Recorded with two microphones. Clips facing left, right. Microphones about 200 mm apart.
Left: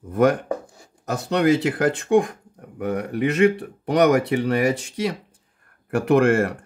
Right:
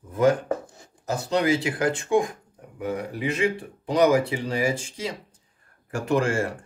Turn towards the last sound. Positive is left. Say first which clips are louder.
# left 6 dB
turn(degrees=60)  # may be behind; listen again after turning